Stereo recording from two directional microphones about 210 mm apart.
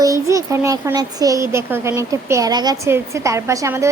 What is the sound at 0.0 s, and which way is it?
A child's voice, 15° right (ahead or behind).